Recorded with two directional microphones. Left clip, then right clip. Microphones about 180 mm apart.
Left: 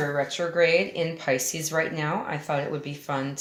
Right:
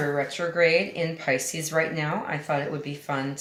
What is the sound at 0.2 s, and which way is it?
Speech, 25° left (ahead or behind).